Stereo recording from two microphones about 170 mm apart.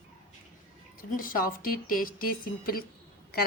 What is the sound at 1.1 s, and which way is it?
Speech, 55° left (ahead or behind).